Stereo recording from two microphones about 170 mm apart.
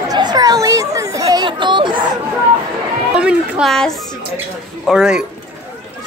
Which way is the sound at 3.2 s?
5° right (ahead or behind).